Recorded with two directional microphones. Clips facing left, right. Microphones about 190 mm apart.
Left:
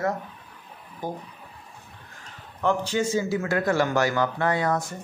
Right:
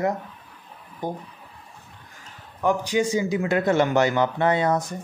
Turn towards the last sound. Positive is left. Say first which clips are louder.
# right 3 dB
turn(degrees=-20)  # may be behind; listen again after turning